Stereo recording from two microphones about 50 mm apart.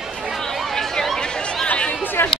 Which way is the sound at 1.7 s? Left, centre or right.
Left.